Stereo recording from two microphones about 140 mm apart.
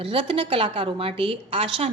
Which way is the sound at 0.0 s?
40° right (ahead or behind).